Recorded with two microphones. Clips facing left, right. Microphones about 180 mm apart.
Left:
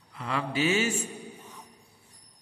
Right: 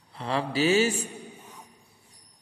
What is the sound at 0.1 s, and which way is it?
Mantra, 30° right (ahead or behind).